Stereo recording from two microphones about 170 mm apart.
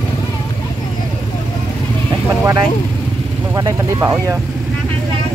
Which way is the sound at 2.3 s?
15° right (ahead or behind).